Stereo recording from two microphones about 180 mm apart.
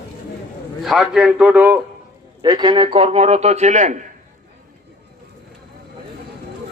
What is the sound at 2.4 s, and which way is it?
A man's voice, 25° right (ahead or behind).